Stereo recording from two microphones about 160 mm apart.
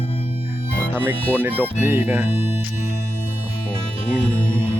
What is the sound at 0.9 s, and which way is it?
Speech, 10° right (ahead or behind).